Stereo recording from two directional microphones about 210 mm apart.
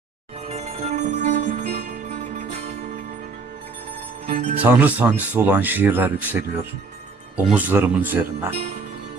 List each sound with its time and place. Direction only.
0.4 s music: 30° right (ahead or behind)
4.3 s music: 35° right (ahead or behind)
4.6 s speech: 10° right (ahead or behind)
7.3 s speech: 5° right (ahead or behind)